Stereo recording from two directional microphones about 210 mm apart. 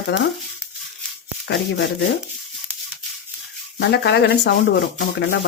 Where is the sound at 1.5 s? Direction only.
55° left (ahead or behind).